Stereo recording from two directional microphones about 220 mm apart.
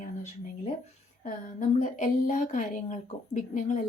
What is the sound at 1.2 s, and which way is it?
A woman's voice, 35° left (ahead or behind).